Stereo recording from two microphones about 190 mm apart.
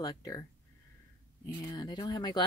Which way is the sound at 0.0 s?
20° left (ahead or behind).